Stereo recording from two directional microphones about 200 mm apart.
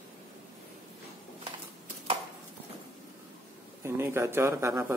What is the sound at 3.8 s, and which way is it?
Speech, 10° right (ahead or behind).